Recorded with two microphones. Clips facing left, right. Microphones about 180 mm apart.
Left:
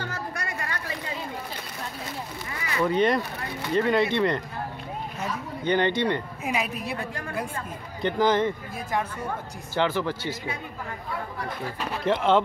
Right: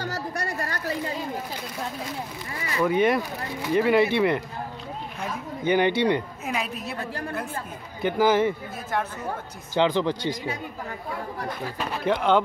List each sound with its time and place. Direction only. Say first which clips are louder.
0.0 s a sound: right 3 dB; 35° right (ahead or behind)
2.8 s a woman's voice: right 1 dB; 5° right (ahead or behind)
5.6 s speech: right 2 dB; 10° right (ahead or behind)
6.4 s a woman's voice: left 1 dB; centre (ahead or behind); by 10.1 s 15° right (ahead or behind)
12.0 s a woman's voice: even; centre (ahead or behind)